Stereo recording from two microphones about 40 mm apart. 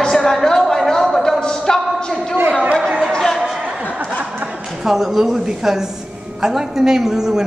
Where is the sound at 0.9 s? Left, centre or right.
Centre.